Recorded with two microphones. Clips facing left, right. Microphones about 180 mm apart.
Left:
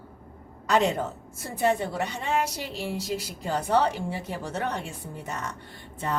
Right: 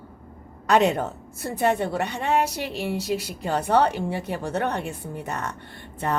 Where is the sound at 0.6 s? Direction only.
65° right (ahead or behind).